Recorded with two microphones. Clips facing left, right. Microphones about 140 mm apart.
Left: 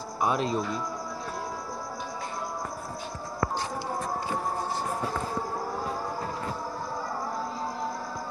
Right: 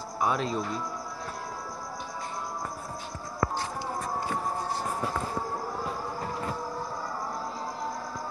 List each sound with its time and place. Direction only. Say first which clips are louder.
0.2 s speech: left 1 dB; 20° left (ahead or behind)